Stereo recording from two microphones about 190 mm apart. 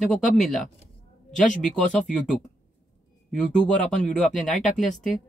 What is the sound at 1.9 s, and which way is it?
Speech, 5° left (ahead or behind).